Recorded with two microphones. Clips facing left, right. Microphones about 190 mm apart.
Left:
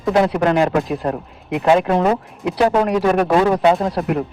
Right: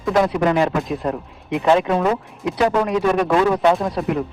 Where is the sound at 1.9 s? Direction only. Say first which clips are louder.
Left 2 dB; 40° left (ahead or behind).